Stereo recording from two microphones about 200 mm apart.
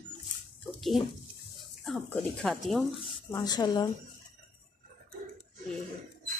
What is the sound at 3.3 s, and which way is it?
Speech, 20° left (ahead or behind).